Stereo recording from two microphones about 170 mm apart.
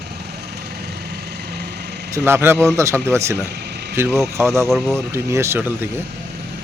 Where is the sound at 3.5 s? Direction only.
75° right (ahead or behind).